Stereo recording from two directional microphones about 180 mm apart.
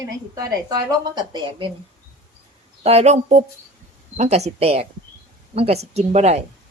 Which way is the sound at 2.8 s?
35° right (ahead or behind).